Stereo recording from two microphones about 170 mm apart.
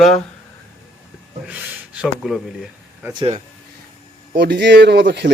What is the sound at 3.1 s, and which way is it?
Speech, 30° right (ahead or behind).